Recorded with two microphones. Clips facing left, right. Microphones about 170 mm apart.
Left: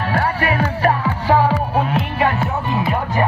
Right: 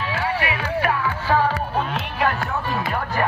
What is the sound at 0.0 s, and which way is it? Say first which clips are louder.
Music: left 5 dB; 45° left (ahead or behind).